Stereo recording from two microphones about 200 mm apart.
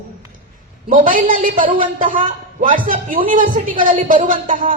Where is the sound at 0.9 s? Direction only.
40° right (ahead or behind).